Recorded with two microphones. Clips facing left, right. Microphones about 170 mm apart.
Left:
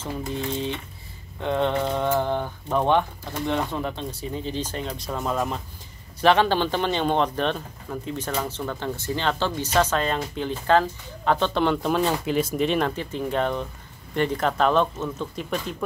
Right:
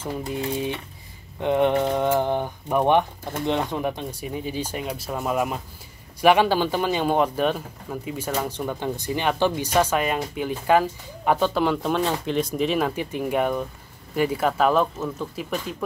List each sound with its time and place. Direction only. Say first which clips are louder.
0.3 s speech: right 1 dB; 15° right (ahead or behind)